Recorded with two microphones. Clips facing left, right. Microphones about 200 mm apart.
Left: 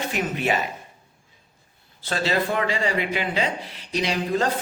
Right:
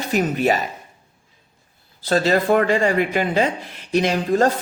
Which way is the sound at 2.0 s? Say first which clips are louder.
Right 6 dB; 40° right (ahead or behind).